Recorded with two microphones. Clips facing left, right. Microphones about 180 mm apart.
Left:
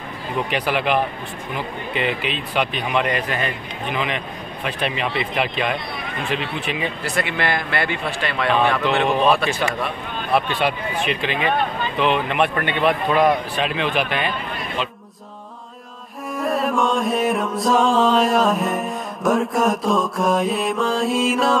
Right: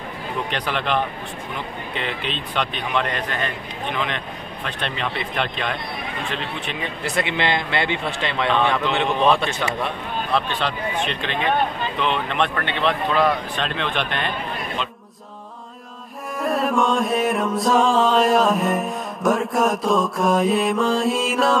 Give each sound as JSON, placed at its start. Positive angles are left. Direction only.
{"t": 0.5, "sound": "music", "side_deg": 5}
{"t": 7.0, "sound": "a man's voice", "side_deg": -20}
{"t": 9.0, "sound": "speech", "side_deg": 5}
{"t": 10.3, "sound": "music", "side_deg": 10}
{"t": 12.0, "sound": "speech", "side_deg": 5}
{"t": 16.3, "sound": "music", "side_deg": 0}